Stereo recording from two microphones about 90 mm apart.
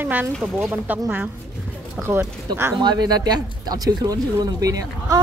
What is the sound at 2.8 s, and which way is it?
Speech, 50° right (ahead or behind).